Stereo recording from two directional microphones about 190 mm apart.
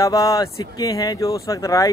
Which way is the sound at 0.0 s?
20° left (ahead or behind).